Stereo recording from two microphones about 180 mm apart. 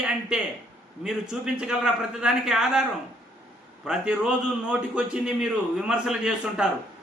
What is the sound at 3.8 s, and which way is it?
A man's voice, 5° right (ahead or behind).